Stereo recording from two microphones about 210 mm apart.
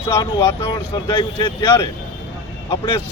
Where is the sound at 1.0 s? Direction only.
25° left (ahead or behind).